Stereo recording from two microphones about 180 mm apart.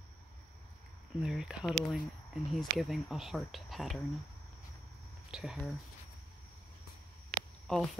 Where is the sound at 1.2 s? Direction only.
5° right (ahead or behind).